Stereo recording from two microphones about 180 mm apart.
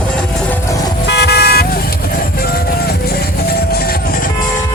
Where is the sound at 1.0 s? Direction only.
70° left (ahead or behind).